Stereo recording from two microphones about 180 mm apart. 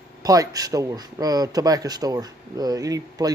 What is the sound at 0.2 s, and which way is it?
Speech, 20° right (ahead or behind).